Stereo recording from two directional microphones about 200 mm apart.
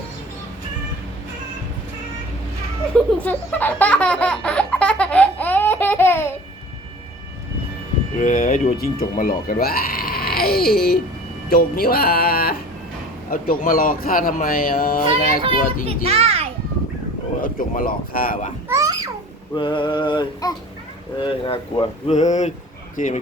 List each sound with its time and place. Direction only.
3.2 s laughter: 10° left (ahead or behind)
8.1 s speech: 40° left (ahead or behind)
15.4 s a child's voice: 30° right (ahead or behind)
17.4 s speech: 45° left (ahead or behind)
18.7 s a sound: 15° right (ahead or behind)
19.5 s speech: 25° left (ahead or behind); by 23.2 s 40° left (ahead or behind)